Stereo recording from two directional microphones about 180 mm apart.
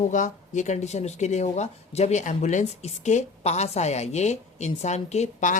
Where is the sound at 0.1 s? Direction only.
45° left (ahead or behind).